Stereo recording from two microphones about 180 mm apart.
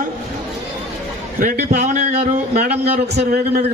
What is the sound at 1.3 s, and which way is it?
A man's voice, 50° right (ahead or behind).